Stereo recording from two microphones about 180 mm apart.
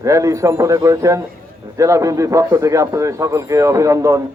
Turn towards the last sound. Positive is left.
turn(degrees=-15)  # may be behind; listen again after turning